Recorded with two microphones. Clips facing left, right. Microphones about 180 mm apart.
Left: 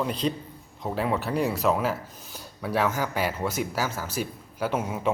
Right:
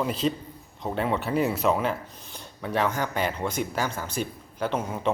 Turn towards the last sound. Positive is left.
turn(degrees=5)  # may be behind; listen again after turning